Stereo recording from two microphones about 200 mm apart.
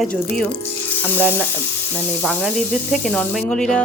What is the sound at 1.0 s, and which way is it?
Frying, 10° left (ahead or behind).